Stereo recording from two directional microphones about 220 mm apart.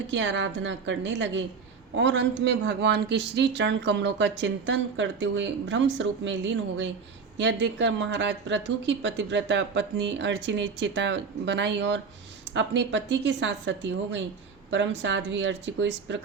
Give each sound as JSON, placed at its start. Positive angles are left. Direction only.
{"t": 0.1, "sound": "speech", "side_deg": -55}